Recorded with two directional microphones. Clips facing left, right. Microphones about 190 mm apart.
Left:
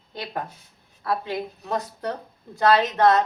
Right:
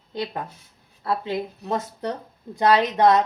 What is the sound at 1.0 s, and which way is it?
A woman's voice, 25° right (ahead or behind).